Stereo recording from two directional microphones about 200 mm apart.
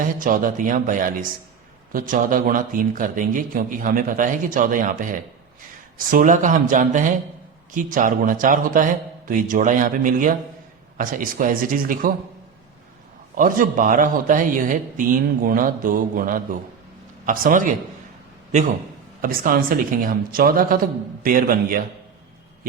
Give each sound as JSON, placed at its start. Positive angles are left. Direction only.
{"t": 0.0, "sound": "a man's voice", "side_deg": -45}
{"t": 13.3, "sound": "a man's voice", "side_deg": -40}